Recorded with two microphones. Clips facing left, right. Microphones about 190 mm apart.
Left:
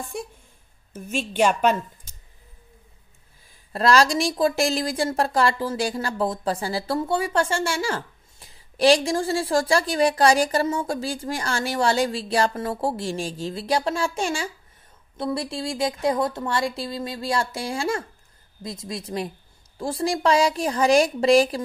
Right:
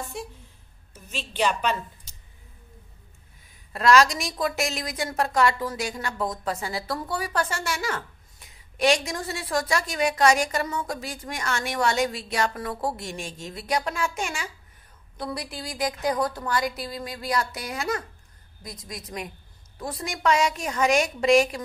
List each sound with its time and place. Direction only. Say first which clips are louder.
1.1 s a woman's voice: left 5 dB; 50° left (ahead or behind)
3.7 s a woman's voice: left 1 dB; 35° left (ahead or behind)